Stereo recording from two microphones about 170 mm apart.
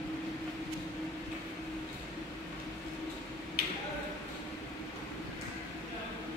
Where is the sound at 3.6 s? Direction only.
65° right (ahead or behind).